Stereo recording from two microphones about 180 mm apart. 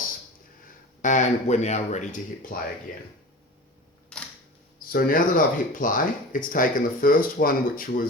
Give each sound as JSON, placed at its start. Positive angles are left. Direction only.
{"t": 1.0, "sound": "speech", "side_deg": 40}
{"t": 4.1, "sound": "camera", "side_deg": 5}
{"t": 4.9, "sound": "speech", "side_deg": 55}